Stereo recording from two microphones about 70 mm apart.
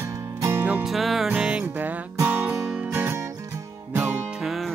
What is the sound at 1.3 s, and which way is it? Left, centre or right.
Music, centre.